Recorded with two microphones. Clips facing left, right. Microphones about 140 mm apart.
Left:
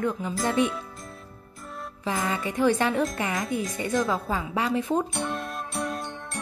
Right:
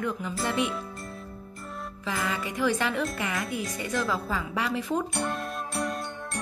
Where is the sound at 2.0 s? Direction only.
25° left (ahead or behind).